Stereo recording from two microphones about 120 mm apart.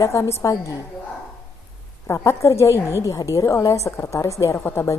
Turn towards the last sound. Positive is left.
turn(degrees=20)  # may be behind; listen again after turning